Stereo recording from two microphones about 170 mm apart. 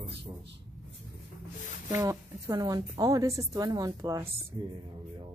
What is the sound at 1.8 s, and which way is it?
A woman's voice, 20° right (ahead or behind).